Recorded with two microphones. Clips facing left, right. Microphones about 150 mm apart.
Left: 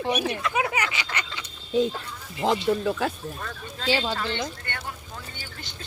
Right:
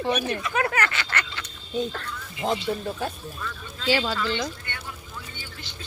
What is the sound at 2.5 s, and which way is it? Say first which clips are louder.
Speech: left 4 dB; 90° left.